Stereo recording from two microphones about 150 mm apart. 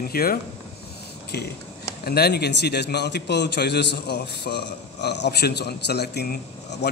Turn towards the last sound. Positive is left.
turn(degrees=90)